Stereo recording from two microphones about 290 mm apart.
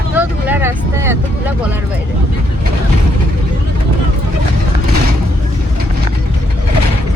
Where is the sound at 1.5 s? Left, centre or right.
Centre.